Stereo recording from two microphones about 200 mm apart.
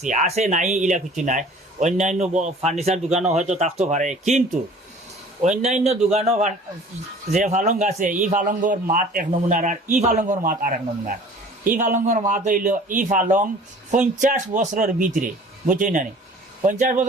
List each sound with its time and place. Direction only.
0.0 s a man's voice: 35° right (ahead or behind)
5.4 s a man's voice: 35° right (ahead or behind)